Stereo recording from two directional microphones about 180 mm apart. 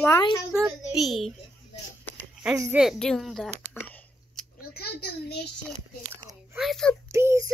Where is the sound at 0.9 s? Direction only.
Centre (ahead or behind).